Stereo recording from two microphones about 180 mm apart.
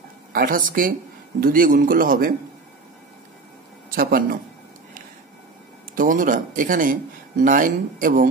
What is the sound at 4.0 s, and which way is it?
Speech, 55° right (ahead or behind).